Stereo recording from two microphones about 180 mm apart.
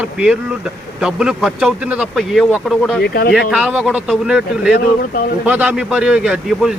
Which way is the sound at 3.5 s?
5° right (ahead or behind).